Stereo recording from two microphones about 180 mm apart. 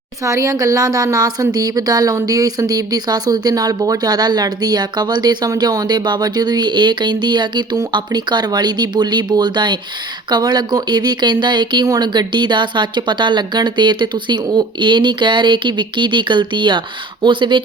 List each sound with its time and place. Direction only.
0.3 s speech: 20° right (ahead or behind)